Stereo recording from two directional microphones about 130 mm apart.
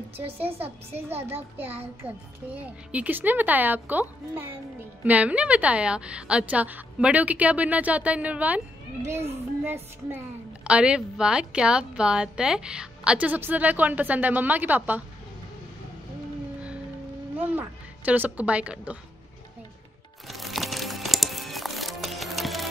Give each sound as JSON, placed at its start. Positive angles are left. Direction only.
{"t": 1.3, "sound": "a woman's voice", "side_deg": -15}
{"t": 17.4, "sound": "a woman's voice", "side_deg": -15}
{"t": 20.2, "sound": "music", "side_deg": 0}